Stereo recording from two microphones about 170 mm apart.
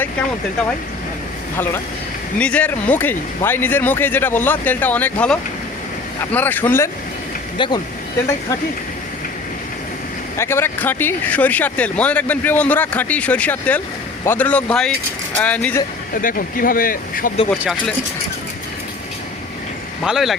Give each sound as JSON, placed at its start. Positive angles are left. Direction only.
{"t": 2.4, "sound": "speech", "side_deg": 10}
{"t": 7.6, "sound": "speech", "side_deg": 30}
{"t": 10.3, "sound": "speech", "side_deg": 15}
{"t": 16.1, "sound": "speech", "side_deg": 55}
{"t": 17.6, "sound": "speech", "side_deg": 0}
{"t": 20.1, "sound": "speech", "side_deg": 0}